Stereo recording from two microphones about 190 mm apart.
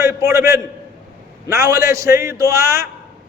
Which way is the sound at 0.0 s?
15° right (ahead or behind).